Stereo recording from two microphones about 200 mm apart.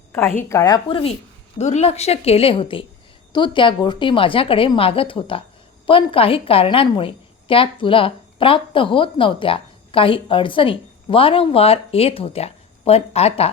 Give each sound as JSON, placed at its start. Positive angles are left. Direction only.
{"t": 0.1, "sound": "a woman's voice", "side_deg": 10}